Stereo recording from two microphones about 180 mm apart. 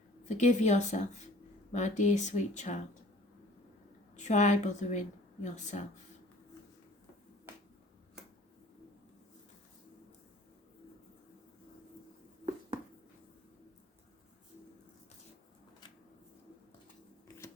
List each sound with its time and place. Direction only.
0.3 s a woman's voice: 40° left (ahead or behind)
4.2 s a woman's voice: 40° left (ahead or behind)